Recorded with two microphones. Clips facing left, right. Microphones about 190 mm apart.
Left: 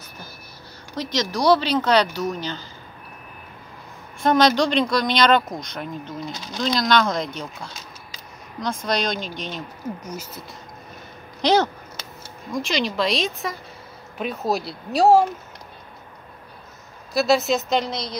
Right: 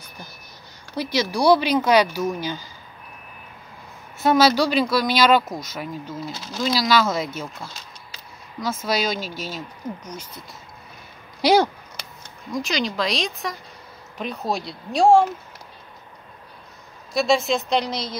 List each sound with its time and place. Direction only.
0.9 s speech: 10° right (ahead or behind)
4.2 s speech: 5° right (ahead or behind)
9.8 s speech: 10° left (ahead or behind)
11.4 s speech: 10° right (ahead or behind); by 15.2 s 5° left (ahead or behind)
17.1 s speech: 5° left (ahead or behind)